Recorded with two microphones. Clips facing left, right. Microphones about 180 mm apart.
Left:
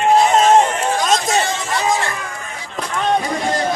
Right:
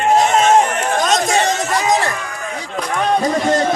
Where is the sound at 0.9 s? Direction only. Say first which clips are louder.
Right 3 dB; 45° right (ahead or behind).